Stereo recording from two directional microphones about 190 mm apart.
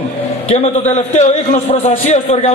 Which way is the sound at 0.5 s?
35° left (ahead or behind).